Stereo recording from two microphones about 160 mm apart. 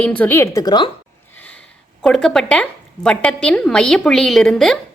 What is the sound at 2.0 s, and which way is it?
A woman's voice, 5° left (ahead or behind).